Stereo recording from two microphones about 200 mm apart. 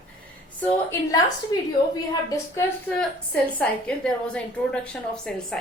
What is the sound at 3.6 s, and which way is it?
A woman's voice, 5° left (ahead or behind).